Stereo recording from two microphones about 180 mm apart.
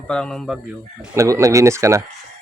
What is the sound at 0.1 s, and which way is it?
Speech, 5° left (ahead or behind).